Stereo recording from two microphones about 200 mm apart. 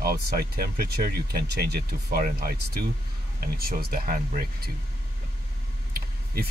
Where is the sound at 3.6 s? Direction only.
50° right (ahead or behind).